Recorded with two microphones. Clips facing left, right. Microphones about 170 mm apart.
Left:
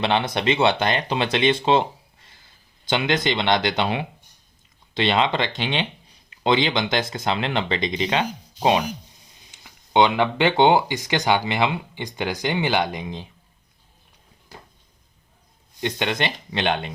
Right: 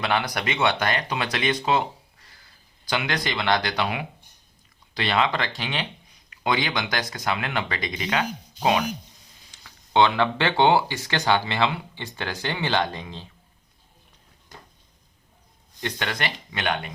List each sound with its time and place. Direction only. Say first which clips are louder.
0.0 s speech: left 4 dB; 25° left (ahead or behind)
2.8 s speech: left 5 dB; 25° left (ahead or behind)
15.8 s speech: left 5 dB; 20° left (ahead or behind)